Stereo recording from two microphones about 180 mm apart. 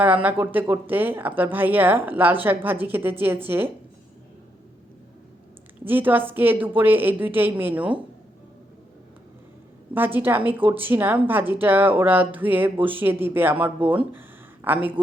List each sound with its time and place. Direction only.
0.0 s speech: 10° right (ahead or behind)
5.8 s speech: 10° right (ahead or behind)
9.9 s speech: 10° right (ahead or behind)
14.1 s a sound: 10° right (ahead or behind)
15.0 s a woman's voice: 30° right (ahead or behind)